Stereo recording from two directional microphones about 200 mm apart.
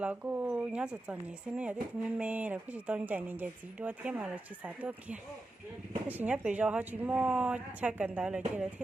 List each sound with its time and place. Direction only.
0.0 s speech: 5° right (ahead or behind)